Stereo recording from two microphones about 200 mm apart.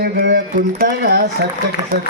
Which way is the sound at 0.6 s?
45° right (ahead or behind).